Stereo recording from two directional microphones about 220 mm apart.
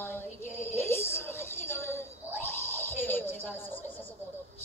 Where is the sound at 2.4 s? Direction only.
10° left (ahead or behind).